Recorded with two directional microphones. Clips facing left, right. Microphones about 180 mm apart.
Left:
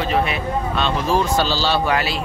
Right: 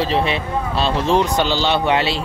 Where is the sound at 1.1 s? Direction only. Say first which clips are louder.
Right 1 dB; 20° right (ahead or behind).